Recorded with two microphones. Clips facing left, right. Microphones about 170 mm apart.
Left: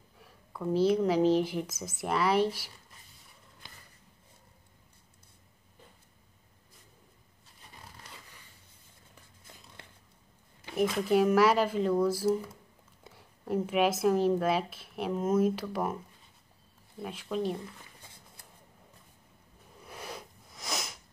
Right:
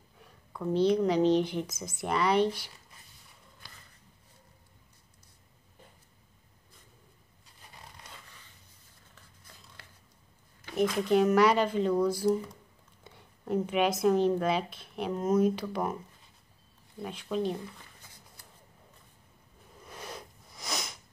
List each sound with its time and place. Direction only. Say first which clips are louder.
0.2 s speech: even; 5° left (ahead or behind)
10.6 s speech: right 1 dB; 5° left (ahead or behind)
17.0 s speech: right 1 dB; centre (ahead or behind)
18.0 s shuffling cards: left 1 dB; 25° left (ahead or behind)
19.9 s sniff: left 1 dB; 5° left (ahead or behind)